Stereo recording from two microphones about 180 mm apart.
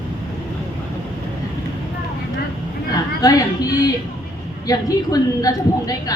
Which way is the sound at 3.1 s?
20° left (ahead or behind).